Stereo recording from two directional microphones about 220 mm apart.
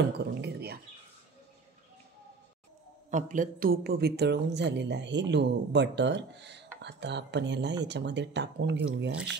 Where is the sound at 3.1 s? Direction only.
35° right (ahead or behind).